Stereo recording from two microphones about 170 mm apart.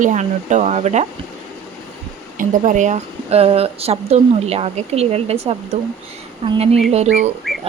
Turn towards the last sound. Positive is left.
turn(degrees=0)  # may be behind; listen again after turning